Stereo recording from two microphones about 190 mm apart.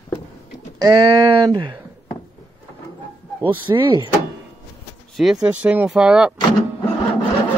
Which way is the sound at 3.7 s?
20° right (ahead or behind).